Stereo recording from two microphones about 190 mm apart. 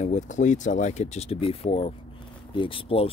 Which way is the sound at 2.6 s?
25° left (ahead or behind).